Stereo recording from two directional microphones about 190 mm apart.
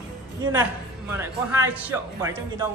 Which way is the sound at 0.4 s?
15° right (ahead or behind).